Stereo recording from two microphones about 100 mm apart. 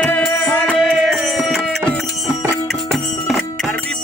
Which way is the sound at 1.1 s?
Centre (ahead or behind).